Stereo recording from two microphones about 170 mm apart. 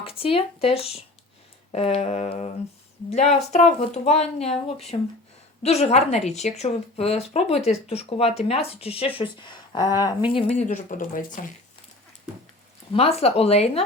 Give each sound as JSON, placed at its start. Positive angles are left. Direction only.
{"t": 0.0, "sound": "a woman's voice", "side_deg": 35}
{"t": 10.5, "sound": "speech", "side_deg": 45}
{"t": 12.9, "sound": "a woman's voice", "side_deg": 35}